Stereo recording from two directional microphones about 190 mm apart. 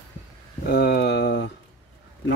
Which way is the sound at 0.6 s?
60° left (ahead or behind).